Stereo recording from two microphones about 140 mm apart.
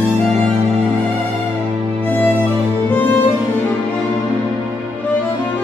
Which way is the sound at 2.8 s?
15° left (ahead or behind).